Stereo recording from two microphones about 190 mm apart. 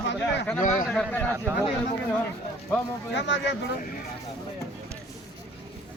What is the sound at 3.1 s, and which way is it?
Speech, 70° left (ahead or behind).